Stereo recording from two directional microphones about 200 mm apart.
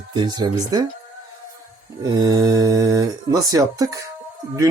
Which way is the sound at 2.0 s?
20° right (ahead or behind).